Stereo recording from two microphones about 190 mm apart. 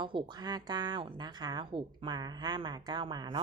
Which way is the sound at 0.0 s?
25° right (ahead or behind).